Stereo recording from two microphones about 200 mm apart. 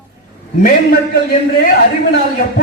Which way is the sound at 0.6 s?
45° left (ahead or behind).